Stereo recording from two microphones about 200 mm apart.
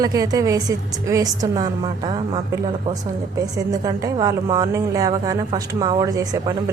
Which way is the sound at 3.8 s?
15° right (ahead or behind).